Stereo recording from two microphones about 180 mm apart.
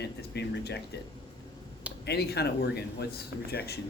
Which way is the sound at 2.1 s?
65° left (ahead or behind).